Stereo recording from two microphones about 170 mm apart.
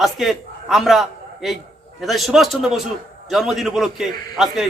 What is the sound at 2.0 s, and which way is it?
A man's voice, centre (ahead or behind).